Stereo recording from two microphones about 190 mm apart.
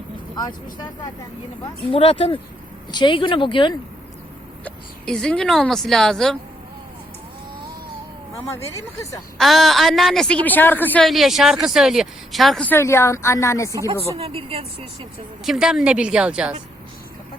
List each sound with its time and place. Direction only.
0.3 s speech: 20° left (ahead or behind)
4.6 s a woman's voice: 5° left (ahead or behind)
8.5 s speech: 15° left (ahead or behind)
9.4 s a woman's voice: centre (ahead or behind)
14.2 s speech: 30° right (ahead or behind)
15.4 s a woman's voice: 5° right (ahead or behind)